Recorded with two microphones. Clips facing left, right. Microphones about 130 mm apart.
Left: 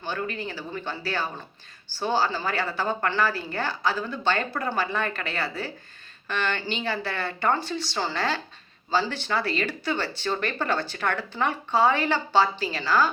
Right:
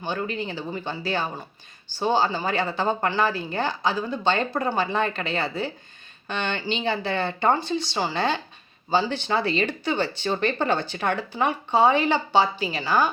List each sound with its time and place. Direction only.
0.0 s speech: 20° right (ahead or behind)